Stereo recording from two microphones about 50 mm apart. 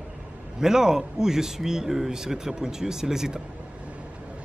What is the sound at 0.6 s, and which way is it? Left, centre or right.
A man's voice, centre.